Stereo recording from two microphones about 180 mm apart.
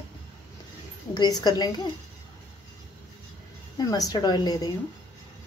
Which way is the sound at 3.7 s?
20° left (ahead or behind).